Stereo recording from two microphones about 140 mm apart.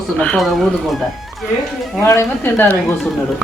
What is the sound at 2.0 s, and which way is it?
Speech, 20° left (ahead or behind).